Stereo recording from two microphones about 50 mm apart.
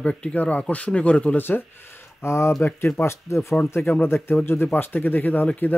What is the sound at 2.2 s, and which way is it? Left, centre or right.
Speech, left.